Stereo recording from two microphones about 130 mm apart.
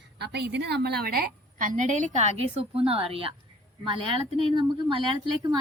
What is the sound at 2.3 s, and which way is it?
A woman's voice, 50° right (ahead or behind).